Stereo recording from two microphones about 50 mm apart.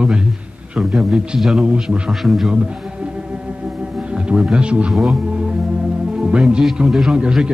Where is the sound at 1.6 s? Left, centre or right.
Centre.